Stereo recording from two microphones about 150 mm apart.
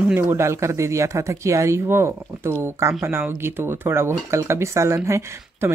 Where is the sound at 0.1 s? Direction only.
15° right (ahead or behind).